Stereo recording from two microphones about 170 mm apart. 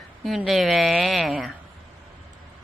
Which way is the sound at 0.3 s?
Centre (ahead or behind).